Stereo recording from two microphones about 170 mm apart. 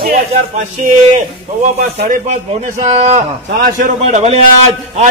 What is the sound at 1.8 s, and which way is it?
Speech, 50° right (ahead or behind).